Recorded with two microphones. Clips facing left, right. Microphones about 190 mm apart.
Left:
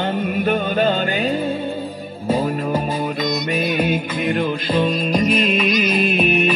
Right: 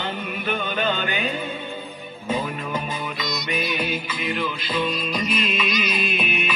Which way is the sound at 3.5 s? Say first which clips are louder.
Left 5 dB; 45° left (ahead or behind).